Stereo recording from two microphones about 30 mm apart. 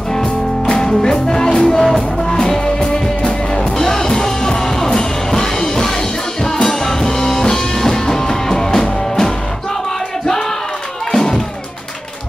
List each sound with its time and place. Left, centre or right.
0.1 s music: left
1.8 s music: centre
2.2 s music: left
11.1 s music: centre